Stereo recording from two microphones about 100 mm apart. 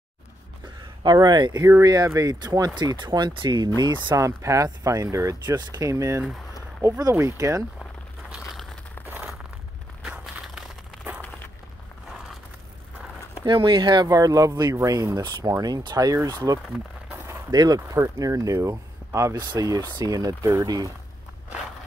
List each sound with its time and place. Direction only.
1.0 s speech: 45° right (ahead or behind)
1.6 s speech: 35° right (ahead or behind)
4.2 s speech: 30° right (ahead or behind)
8.3 s crumpling: centre (ahead or behind)
9.0 s a sound: 20° right (ahead or behind)
10.0 s a sound: 5° right (ahead or behind)
13.5 s speech: 55° right (ahead or behind)
14.0 s speech: 35° right (ahead or behind)
17.5 s speech: 40° right (ahead or behind)